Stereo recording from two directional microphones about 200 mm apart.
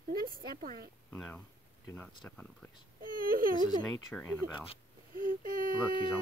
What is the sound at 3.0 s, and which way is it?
Speech, 45° right (ahead or behind).